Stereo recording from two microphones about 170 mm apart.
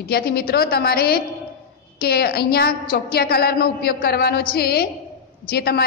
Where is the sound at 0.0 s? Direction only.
65° left (ahead or behind).